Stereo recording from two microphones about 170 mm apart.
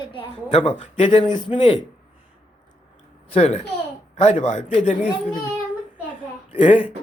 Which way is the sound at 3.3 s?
40° left (ahead or behind).